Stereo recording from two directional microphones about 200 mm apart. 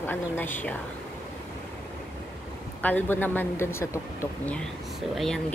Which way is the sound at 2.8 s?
10° left (ahead or behind).